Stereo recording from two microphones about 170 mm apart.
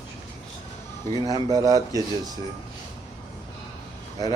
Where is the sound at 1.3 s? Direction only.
20° right (ahead or behind).